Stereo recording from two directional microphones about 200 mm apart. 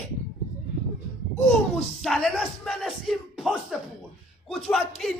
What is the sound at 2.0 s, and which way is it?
Speech, centre (ahead or behind).